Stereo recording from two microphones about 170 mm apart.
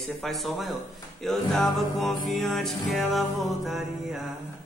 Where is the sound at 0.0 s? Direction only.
Centre (ahead or behind).